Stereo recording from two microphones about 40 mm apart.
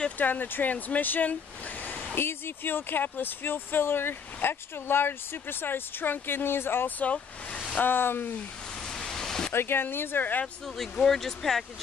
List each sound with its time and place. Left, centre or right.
0.2 s speech: left
1.8 s a sound: left
2.1 s speech: left
8.8 s pink noise: centre
9.5 s speech: left
10.8 s speech: centre